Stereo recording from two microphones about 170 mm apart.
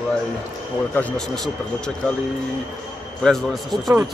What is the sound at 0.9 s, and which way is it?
Speech, 5° left (ahead or behind).